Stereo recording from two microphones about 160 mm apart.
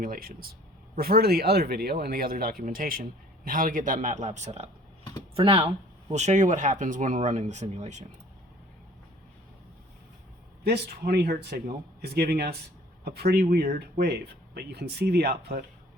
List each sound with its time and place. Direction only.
0.0 s speech: 65° right (ahead or behind); by 8.0 s 50° right (ahead or behind)
10.6 s speech: 90° right